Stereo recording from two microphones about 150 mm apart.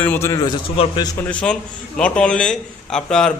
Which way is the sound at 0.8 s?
40° left (ahead or behind).